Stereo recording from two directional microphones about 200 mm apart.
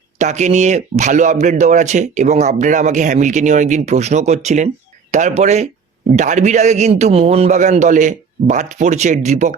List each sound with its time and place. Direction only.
0.2 s a man's voice: 35° right (ahead or behind)